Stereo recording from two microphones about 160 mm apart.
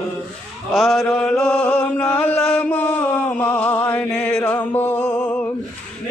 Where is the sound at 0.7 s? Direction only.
Centre (ahead or behind).